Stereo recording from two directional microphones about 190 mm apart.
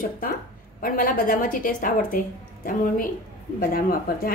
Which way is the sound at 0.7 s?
45° left (ahead or behind).